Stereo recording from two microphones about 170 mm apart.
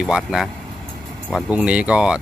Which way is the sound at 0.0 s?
5° right (ahead or behind).